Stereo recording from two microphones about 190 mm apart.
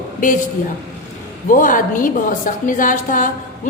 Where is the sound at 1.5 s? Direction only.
45° left (ahead or behind).